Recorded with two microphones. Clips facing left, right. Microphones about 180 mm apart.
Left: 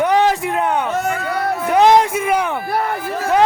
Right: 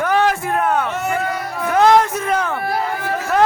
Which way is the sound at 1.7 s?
15° left (ahead or behind).